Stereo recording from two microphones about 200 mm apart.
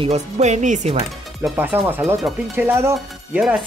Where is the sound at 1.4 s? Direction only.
10° right (ahead or behind).